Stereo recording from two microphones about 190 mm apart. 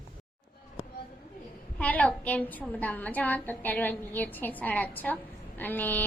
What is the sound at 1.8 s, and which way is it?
A woman's voice, 5° left (ahead or behind).